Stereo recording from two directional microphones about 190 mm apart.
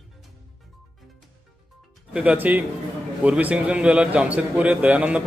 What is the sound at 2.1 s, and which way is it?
A man's voice, 5° right (ahead or behind).